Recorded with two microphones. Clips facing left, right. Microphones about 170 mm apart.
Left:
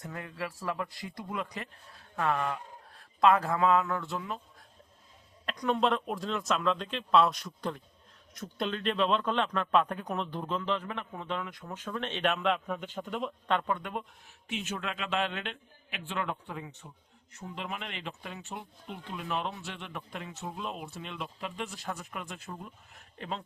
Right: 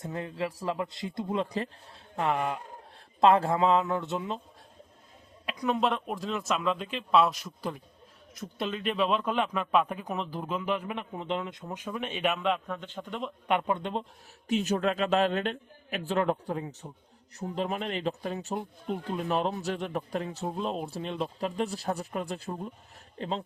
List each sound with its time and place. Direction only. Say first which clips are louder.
0.0 s speech: right 5 dB; 25° right (ahead or behind)
2.1 s speech: right 2 dB; 20° right (ahead or behind)
3.2 s speech: right 3 dB; 30° right (ahead or behind)
5.5 s speech: even; 5° right (ahead or behind)
13.5 s speech: right 4 dB; 20° right (ahead or behind)
14.4 s speech: right 10 dB; 40° right (ahead or behind)